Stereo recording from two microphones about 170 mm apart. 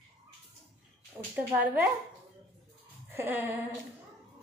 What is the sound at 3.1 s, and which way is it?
Speech, 10° right (ahead or behind).